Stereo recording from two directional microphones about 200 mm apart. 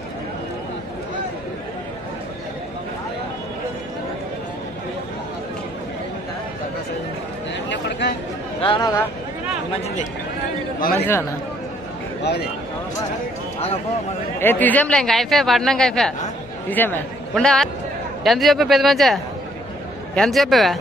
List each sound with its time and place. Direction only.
8.5 s speech: 25° left (ahead or behind)
10.8 s speech: 50° left (ahead or behind)
14.4 s speech: 10° left (ahead or behind)
20.2 s speech: centre (ahead or behind)